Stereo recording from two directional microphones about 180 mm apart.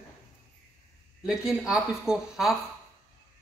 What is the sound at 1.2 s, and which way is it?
Speech, 5° right (ahead or behind).